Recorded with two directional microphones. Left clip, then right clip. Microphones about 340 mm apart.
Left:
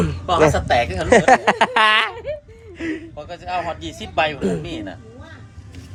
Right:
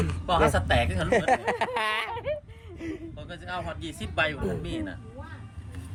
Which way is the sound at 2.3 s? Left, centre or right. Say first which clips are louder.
Left 3 dB; right.